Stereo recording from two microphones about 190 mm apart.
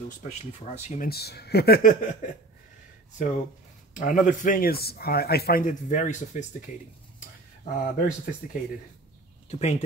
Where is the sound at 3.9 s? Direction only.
40° left (ahead or behind).